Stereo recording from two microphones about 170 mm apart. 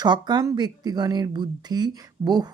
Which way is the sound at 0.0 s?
25° right (ahead or behind).